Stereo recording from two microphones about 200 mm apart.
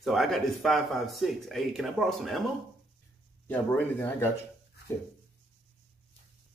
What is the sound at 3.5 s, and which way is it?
Speech, 10° left (ahead or behind).